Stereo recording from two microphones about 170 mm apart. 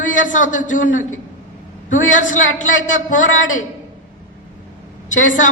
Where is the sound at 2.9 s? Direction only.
50° left (ahead or behind).